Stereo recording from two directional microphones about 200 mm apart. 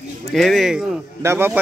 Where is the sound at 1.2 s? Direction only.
10° right (ahead or behind).